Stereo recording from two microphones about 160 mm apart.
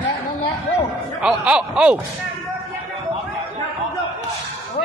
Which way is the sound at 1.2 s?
5° right (ahead or behind).